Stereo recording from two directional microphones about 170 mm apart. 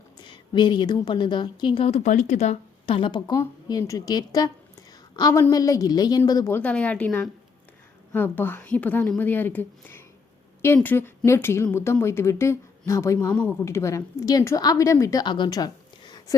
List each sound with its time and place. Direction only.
0.2 s a woman's voice: 25° left (ahead or behind)